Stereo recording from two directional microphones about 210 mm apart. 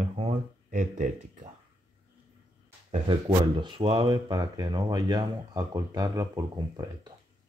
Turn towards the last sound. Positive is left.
turn(degrees=-20)  # may be behind; listen again after turning